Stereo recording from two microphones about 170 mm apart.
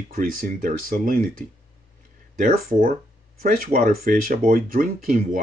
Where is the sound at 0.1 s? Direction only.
55° right (ahead or behind).